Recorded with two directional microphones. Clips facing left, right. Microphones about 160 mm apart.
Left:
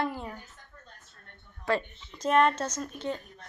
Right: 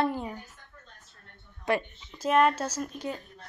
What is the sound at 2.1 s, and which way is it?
Speech, 5° right (ahead or behind).